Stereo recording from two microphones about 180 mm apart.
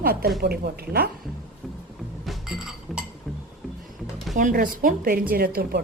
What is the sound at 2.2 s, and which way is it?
Chink, centre (ahead or behind).